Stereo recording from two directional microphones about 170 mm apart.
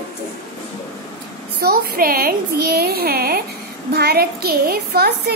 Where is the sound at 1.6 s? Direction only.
60° right (ahead or behind).